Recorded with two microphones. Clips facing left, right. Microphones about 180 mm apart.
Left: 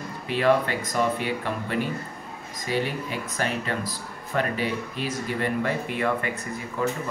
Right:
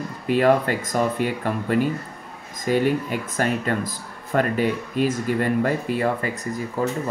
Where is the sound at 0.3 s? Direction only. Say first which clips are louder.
Right 4 dB; 45° right (ahead or behind).